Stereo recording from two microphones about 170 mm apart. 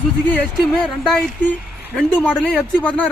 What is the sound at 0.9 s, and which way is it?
Speech, centre (ahead or behind).